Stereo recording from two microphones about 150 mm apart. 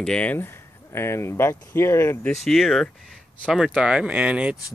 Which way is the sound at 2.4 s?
Centre (ahead or behind).